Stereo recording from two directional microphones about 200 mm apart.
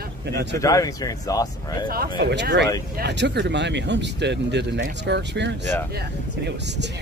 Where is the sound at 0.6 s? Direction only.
15° left (ahead or behind).